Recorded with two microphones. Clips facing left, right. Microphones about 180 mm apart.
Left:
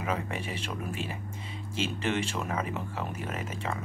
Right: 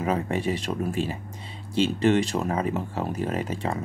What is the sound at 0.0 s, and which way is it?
Speech, 35° right (ahead or behind).